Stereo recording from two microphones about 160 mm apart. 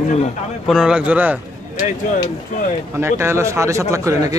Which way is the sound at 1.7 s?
50° left (ahead or behind).